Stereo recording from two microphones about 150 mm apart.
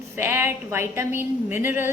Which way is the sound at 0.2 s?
15° right (ahead or behind).